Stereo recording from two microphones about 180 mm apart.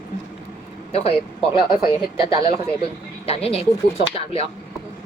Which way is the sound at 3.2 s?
35° left (ahead or behind).